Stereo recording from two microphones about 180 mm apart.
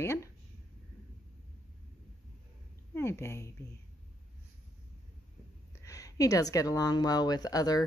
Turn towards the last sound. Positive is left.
turn(degrees=20)  # may be behind; listen again after turning